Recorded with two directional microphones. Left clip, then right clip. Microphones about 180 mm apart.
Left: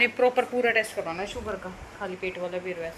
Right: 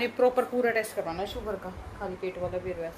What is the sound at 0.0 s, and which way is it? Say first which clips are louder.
A woman's voice: left 3 dB; 5° right (ahead or behind).